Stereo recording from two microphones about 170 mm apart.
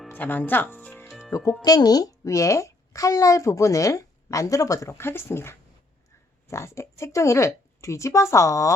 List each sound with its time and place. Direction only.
0.1 s speech: 10° left (ahead or behind)
1.6 s a woman's voice: 20° left (ahead or behind)